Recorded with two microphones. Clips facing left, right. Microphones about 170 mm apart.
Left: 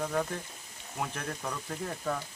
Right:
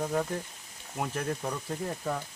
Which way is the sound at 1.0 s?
15° right (ahead or behind).